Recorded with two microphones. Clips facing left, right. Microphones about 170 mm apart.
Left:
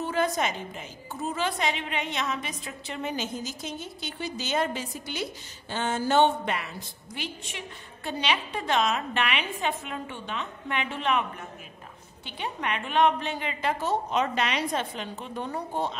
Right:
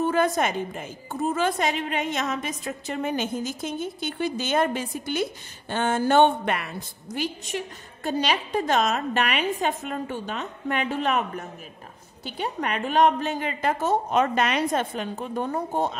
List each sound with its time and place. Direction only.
0.0 s a woman's voice: 50° right (ahead or behind)
7.2 s a woman's voice: 40° right (ahead or behind)